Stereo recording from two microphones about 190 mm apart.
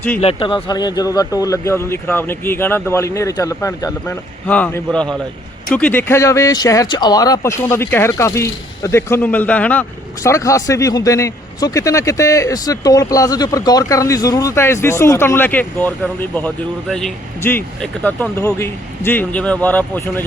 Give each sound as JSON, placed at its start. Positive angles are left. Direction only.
{"t": 0.2, "sound": "speech", "side_deg": 30}